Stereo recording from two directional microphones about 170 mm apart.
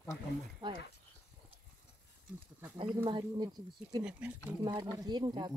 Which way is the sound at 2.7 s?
30° right (ahead or behind).